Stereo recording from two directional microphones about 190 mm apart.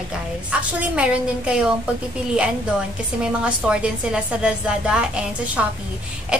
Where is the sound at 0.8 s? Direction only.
5° right (ahead or behind).